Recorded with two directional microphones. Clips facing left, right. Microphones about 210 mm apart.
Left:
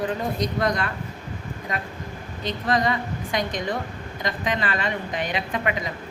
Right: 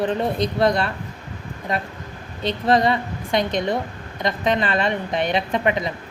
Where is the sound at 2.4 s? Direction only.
30° right (ahead or behind).